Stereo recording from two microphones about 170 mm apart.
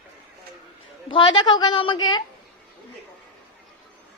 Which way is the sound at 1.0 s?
30° left (ahead or behind).